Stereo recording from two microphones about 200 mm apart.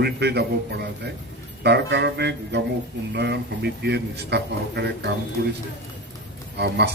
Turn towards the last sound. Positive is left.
turn(degrees=-55)  # may be behind; listen again after turning